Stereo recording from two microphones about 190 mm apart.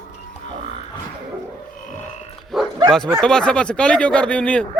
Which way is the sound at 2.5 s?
Centre (ahead or behind).